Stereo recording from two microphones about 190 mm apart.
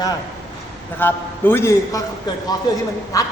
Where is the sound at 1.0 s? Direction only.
10° left (ahead or behind).